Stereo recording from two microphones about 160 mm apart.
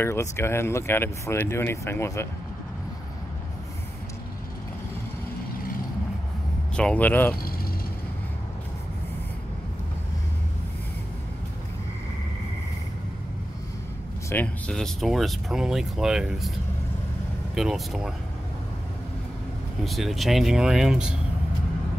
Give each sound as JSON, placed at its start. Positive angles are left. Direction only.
{"t": 0.0, "sound": "speech", "side_deg": 15}
{"t": 6.8, "sound": "speech", "side_deg": 10}
{"t": 14.3, "sound": "speech", "side_deg": 5}
{"t": 17.6, "sound": "speech", "side_deg": 0}
{"t": 19.8, "sound": "speech", "side_deg": 0}